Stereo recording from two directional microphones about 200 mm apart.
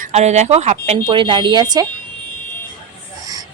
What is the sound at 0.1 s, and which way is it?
A woman's voice, 35° right (ahead or behind).